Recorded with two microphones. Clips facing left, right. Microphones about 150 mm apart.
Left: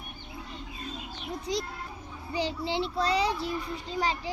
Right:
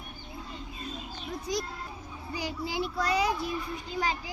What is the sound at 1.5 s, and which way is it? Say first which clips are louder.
A child's voice: left 1 dB; 25° left (ahead or behind).